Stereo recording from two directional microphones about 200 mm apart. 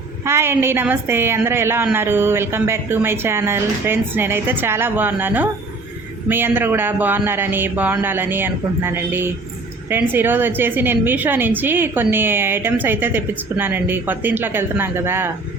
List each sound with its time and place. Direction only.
0.3 s a woman's voice: 10° right (ahead or behind)